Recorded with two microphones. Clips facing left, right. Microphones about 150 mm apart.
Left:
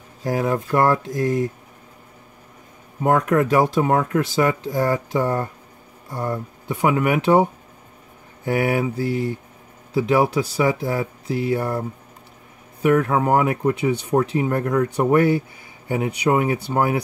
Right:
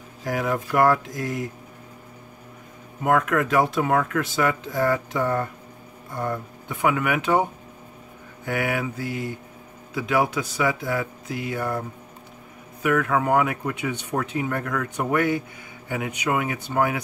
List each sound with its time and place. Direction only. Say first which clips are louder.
0.2 s speech: left 4 dB; 30° left (ahead or behind)
3.0 s speech: left 3 dB; 30° left (ahead or behind)
8.5 s speech: left 5 dB; 35° left (ahead or behind)
9.9 s speech: left 5 dB; 30° left (ahead or behind)
12.8 s speech: left 4 dB; 35° left (ahead or behind)